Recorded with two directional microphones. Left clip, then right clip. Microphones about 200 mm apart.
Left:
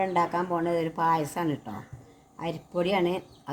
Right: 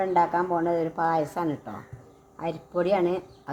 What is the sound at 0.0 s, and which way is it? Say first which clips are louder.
Speech: right 3 dB; 45° left (ahead or behind).